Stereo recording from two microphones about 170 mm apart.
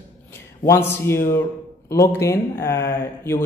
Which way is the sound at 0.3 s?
15° left (ahead or behind).